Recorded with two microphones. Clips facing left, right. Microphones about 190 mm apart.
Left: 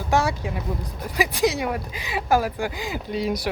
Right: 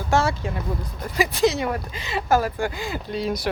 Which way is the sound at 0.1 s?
15° left (ahead or behind).